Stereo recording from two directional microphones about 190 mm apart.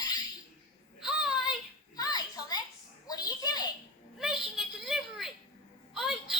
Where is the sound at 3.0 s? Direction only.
20° left (ahead or behind).